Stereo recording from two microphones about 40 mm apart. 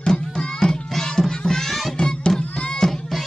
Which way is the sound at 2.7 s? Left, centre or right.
Centre.